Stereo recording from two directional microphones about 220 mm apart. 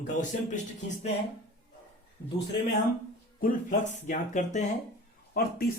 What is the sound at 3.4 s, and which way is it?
Speech, 35° left (ahead or behind).